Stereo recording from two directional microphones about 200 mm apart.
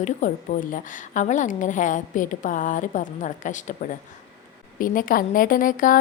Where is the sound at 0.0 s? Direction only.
40° left (ahead or behind).